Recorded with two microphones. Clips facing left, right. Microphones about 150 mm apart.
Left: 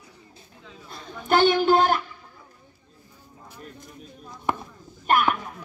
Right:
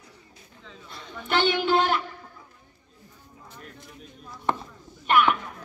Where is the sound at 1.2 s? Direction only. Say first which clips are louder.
Left 5 dB; 40° left (ahead or behind).